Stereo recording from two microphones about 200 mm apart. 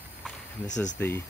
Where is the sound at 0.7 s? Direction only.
35° left (ahead or behind).